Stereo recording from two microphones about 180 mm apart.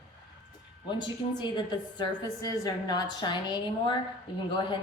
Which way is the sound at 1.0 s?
25° left (ahead or behind).